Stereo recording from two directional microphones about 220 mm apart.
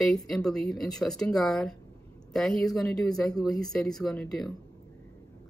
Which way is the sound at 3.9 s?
Centre (ahead or behind).